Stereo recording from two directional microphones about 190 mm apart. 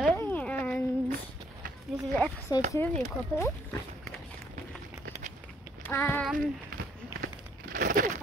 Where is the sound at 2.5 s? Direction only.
20° left (ahead or behind).